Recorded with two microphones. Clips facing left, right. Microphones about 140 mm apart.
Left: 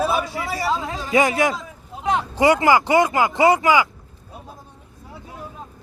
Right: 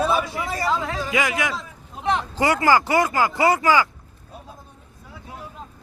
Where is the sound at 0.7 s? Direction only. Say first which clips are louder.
Even; 20° left (ahead or behind).